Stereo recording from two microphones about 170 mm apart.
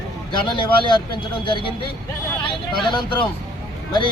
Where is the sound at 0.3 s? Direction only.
30° left (ahead or behind).